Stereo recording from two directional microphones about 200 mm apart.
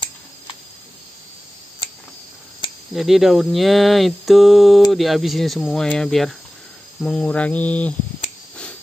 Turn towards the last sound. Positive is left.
turn(degrees=5)  # may be behind; listen again after turning